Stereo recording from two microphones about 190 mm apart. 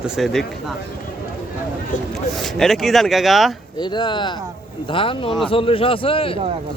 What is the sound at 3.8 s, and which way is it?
A man's voice, 25° left (ahead or behind).